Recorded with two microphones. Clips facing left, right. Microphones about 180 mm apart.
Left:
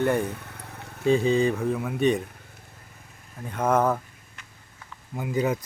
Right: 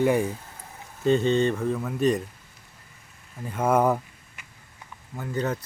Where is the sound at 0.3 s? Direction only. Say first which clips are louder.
Right 1 dB; 65° left (ahead or behind).